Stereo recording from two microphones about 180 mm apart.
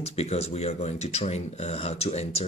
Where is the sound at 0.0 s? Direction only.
35° left (ahead or behind).